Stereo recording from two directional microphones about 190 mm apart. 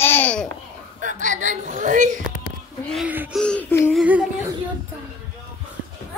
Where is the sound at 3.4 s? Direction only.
10° left (ahead or behind).